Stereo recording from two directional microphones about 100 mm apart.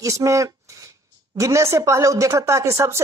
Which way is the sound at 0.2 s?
35° right (ahead or behind).